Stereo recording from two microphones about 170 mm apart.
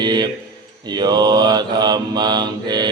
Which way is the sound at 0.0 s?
25° right (ahead or behind).